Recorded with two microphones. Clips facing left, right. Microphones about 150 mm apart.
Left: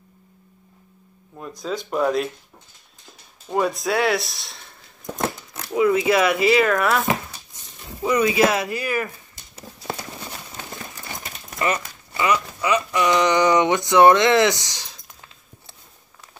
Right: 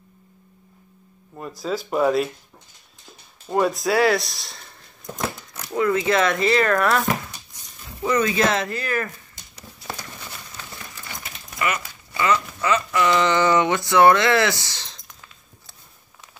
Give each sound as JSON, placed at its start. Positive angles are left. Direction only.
{"t": 1.3, "sound": "speech", "side_deg": -5}
{"t": 3.4, "sound": "speech", "side_deg": 0}
{"t": 5.2, "sound": "a sound", "side_deg": 25}
{"t": 5.7, "sound": "speech", "side_deg": 10}
{"t": 9.6, "sound": "a sound", "side_deg": 30}
{"t": 12.2, "sound": "speech", "side_deg": 15}